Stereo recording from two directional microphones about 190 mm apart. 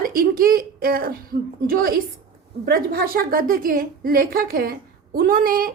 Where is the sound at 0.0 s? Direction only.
50° right (ahead or behind).